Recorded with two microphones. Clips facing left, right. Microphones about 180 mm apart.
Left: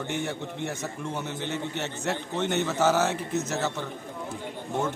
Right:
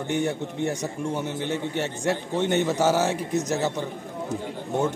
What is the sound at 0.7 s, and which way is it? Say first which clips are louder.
A man's voice: right 5 dB; 15° right (ahead or behind).